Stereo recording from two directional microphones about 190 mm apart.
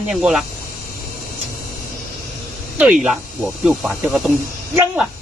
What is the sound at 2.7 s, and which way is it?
Speech, 10° right (ahead or behind).